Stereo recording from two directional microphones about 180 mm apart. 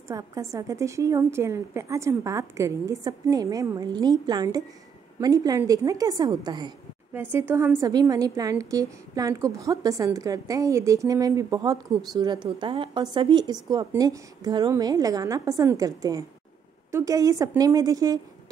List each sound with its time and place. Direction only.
0.1 s a woman's voice: 20° right (ahead or behind)
7.2 s a woman's voice: 10° right (ahead or behind)